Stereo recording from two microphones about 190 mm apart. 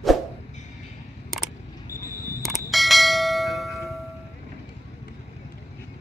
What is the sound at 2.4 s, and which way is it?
Bell, centre (ahead or behind).